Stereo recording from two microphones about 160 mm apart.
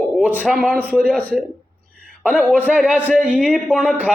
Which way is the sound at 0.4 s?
5° left (ahead or behind).